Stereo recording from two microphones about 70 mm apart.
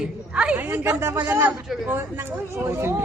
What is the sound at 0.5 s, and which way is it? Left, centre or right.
Speech, right.